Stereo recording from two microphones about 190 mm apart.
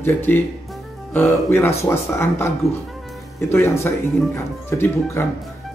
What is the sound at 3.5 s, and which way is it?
Speech, 15° left (ahead or behind).